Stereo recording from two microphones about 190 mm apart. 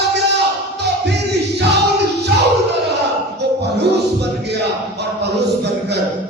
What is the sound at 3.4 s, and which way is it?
Music, 60° right (ahead or behind).